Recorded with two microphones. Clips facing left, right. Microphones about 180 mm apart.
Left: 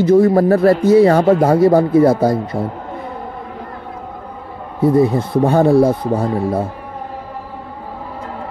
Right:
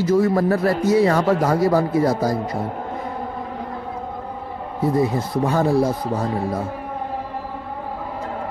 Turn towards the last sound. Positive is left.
turn(degrees=30)  # may be behind; listen again after turning